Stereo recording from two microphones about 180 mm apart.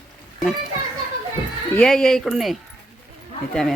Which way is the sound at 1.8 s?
5° left (ahead or behind).